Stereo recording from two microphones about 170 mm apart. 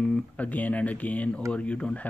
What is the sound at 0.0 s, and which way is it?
Speech, 5° left (ahead or behind).